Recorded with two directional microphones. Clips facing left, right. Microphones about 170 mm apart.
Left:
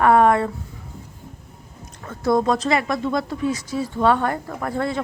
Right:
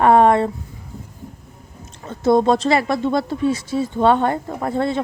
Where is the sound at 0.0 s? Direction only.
25° right (ahead or behind).